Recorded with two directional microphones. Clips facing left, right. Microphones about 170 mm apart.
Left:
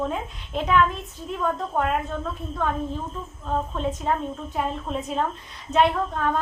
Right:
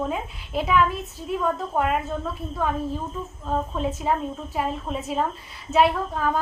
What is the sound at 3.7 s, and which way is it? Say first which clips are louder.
A woman's voice: right 1 dB; 5° right (ahead or behind).